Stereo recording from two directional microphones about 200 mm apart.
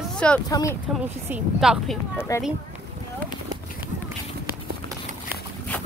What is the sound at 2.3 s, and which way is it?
Speech, 15° left (ahead or behind).